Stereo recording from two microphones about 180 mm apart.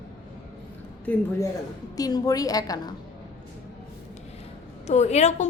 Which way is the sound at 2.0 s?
20° left (ahead or behind).